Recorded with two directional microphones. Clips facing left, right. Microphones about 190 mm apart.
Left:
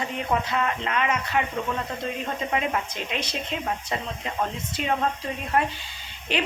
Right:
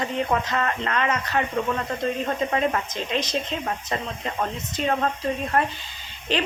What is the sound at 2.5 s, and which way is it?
Speech, 10° left (ahead or behind).